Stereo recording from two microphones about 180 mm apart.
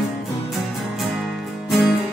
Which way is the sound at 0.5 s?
Centre (ahead or behind).